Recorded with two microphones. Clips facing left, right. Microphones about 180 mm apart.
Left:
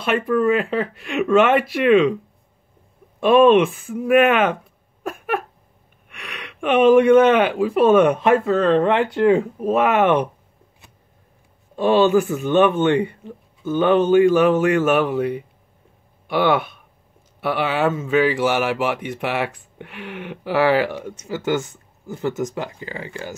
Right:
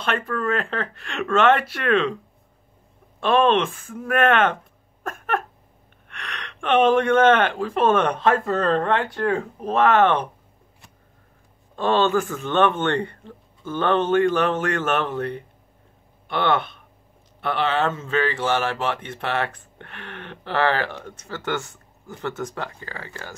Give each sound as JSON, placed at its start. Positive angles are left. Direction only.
{"t": 0.0, "sound": "a man's voice", "side_deg": 10}
{"t": 3.2, "sound": "a man's voice", "side_deg": 10}
{"t": 5.0, "sound": "a sound", "side_deg": 10}
{"t": 6.0, "sound": "a man's voice", "side_deg": 10}
{"t": 8.8, "sound": "a man's voice", "side_deg": 15}
{"t": 11.7, "sound": "a man's voice", "side_deg": 10}